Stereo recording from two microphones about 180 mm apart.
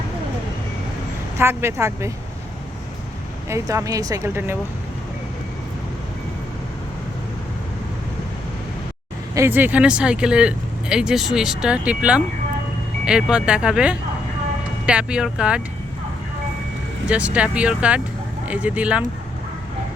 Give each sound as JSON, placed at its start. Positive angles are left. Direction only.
{"t": 1.4, "sound": "speech", "side_deg": -15}
{"t": 3.5, "sound": "speech", "side_deg": -15}
{"t": 9.3, "sound": "speech", "side_deg": -15}
{"t": 17.1, "sound": "speech", "side_deg": -5}